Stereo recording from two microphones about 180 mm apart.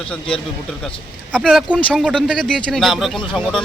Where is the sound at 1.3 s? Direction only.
Centre (ahead or behind).